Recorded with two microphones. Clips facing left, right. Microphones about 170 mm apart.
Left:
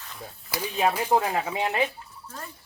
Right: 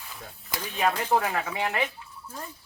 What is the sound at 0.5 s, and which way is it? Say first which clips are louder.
Speech: left 2 dB; 10° left (ahead or behind).